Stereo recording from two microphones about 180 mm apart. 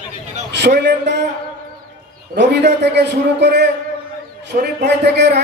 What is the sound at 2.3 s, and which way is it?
A man's voice, 70° right (ahead or behind).